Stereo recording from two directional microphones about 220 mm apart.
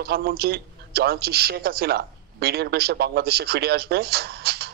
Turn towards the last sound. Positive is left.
turn(degrees=-45)  # may be behind; listen again after turning